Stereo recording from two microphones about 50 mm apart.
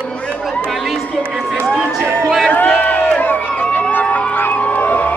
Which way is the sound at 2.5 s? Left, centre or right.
Left.